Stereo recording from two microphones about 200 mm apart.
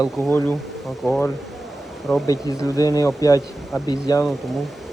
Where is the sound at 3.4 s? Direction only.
Centre (ahead or behind).